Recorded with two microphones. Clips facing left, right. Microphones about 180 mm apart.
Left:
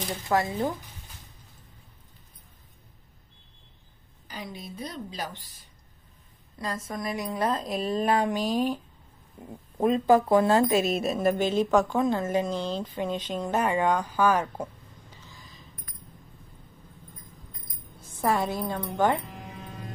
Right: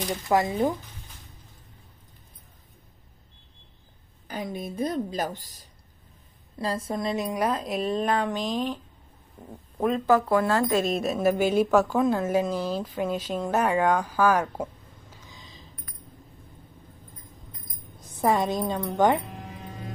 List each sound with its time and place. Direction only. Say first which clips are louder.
0.3 s a woman's voice: right 3 dB; 20° right (ahead or behind)
4.3 s a woman's voice: right 6 dB; 50° right (ahead or behind)
6.6 s a woman's voice: right 4 dB; 30° right (ahead or behind)
7.3 s speech: right 1 dB; 10° right (ahead or behind); by 8.7 s 10° left (ahead or behind)
9.8 s speech: left 1 dB; 20° left (ahead or behind)
10.8 s a woman's voice: right 1 dB; centre (ahead or behind); by 15.6 s 20° right (ahead or behind)
18.1 s a woman's voice: right 3 dB; 15° right (ahead or behind)